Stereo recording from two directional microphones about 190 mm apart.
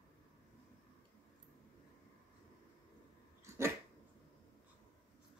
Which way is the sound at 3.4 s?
15° right (ahead or behind).